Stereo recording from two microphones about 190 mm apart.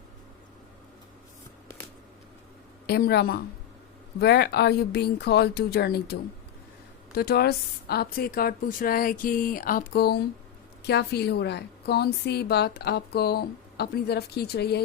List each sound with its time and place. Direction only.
2.8 s a woman's voice: 55° left (ahead or behind)
7.2 s a woman's voice: 55° left (ahead or behind)